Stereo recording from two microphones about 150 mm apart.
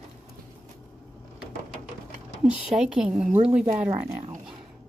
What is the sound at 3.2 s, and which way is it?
Speech, 45° right (ahead or behind).